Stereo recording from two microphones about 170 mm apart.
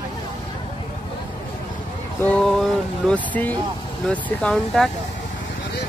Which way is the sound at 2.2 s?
5° left (ahead or behind).